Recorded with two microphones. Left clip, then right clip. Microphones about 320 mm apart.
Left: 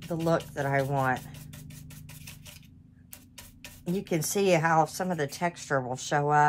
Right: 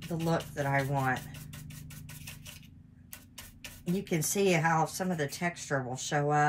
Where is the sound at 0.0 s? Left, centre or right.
Centre.